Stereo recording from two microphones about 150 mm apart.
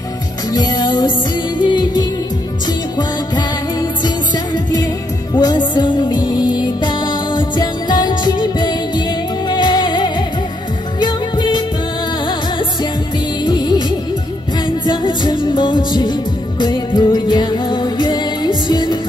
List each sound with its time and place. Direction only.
0.5 s music: 25° left (ahead or behind)
5.3 s music: 30° left (ahead or behind)
13.5 s music: 25° left (ahead or behind)